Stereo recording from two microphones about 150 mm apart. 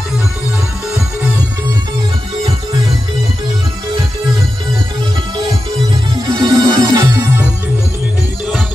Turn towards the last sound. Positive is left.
turn(degrees=-25)  # may be behind; listen again after turning